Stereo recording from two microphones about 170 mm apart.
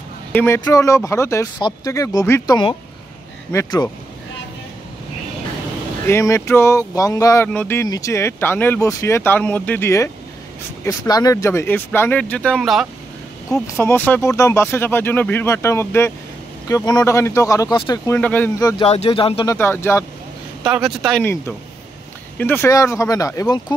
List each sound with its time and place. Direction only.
0.3 s speech: 10° left (ahead or behind)
0.6 s speech: 20° left (ahead or behind)
6.0 s speech: 15° left (ahead or behind); by 12.8 s centre (ahead or behind)
13.5 s speech: 15° left (ahead or behind)
18.6 s speech: 20° left (ahead or behind)
18.9 s speech: 35° left (ahead or behind)
19.4 s speech: 15° left (ahead or behind)
20.6 s speech: 5° right (ahead or behind)
21.2 s speech: 15° left (ahead or behind)